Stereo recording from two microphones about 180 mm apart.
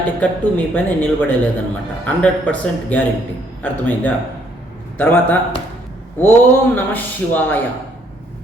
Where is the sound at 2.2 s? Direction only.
10° left (ahead or behind).